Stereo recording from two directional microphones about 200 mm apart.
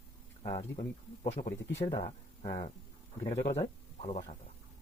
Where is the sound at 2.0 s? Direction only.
40° left (ahead or behind).